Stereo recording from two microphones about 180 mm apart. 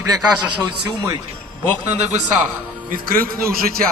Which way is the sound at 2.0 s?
40° right (ahead or behind).